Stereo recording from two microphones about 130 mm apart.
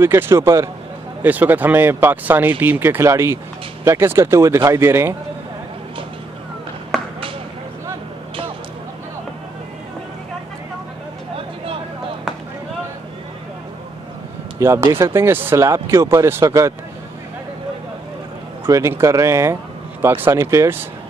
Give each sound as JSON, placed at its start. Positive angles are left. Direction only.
{"t": 0.0, "sound": "speech", "side_deg": -20}
{"t": 6.9, "sound": "a sound", "side_deg": 0}
{"t": 11.3, "sound": "vehicle", "side_deg": -45}
{"t": 14.6, "sound": "speech", "side_deg": -20}
{"t": 18.7, "sound": "speech", "side_deg": -25}